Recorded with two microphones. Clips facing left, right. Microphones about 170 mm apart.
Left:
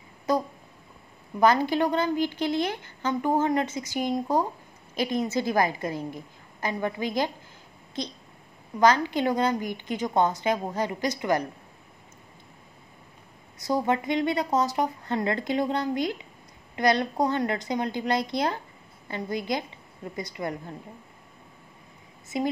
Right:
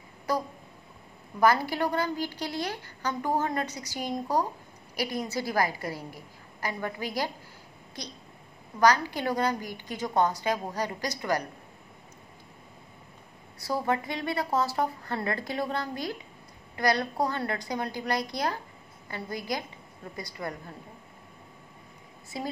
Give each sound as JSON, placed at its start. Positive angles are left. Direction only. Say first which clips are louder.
{"t": 0.3, "sound": "a woman's voice", "louder": "left 4 dB", "side_deg": 20}
{"t": 13.6, "sound": "a woman's voice", "louder": "left 3 dB", "side_deg": 20}
{"t": 22.3, "sound": "a woman's voice", "louder": "left 8 dB", "side_deg": 20}